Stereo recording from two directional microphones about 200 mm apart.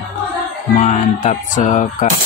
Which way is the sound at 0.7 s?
35° left (ahead or behind).